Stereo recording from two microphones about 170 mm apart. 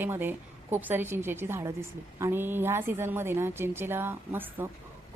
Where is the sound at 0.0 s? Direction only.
10° right (ahead or behind).